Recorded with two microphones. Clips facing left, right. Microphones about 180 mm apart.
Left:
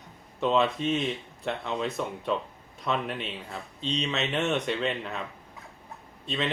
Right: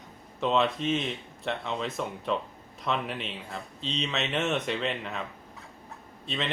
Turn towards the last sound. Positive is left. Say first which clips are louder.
# left 2 dB
turn(degrees=0)  # may be behind; listen again after turning